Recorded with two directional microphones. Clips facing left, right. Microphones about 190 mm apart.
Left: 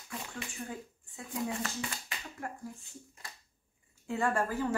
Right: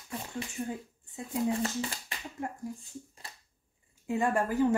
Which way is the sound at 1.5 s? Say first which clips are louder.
Right 6 dB; 35° right (ahead or behind).